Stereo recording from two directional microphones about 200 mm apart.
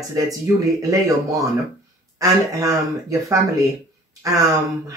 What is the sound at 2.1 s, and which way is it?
Speech, 15° right (ahead or behind).